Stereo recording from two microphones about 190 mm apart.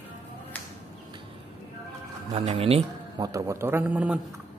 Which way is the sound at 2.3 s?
30° right (ahead or behind).